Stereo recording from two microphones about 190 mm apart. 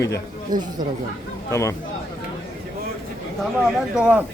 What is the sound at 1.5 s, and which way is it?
Speech, 15° left (ahead or behind).